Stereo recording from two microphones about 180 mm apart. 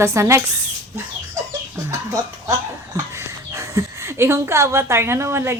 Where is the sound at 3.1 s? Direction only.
15° right (ahead or behind).